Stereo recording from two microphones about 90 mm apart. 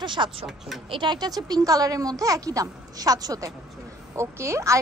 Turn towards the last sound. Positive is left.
turn(degrees=-30)  # may be behind; listen again after turning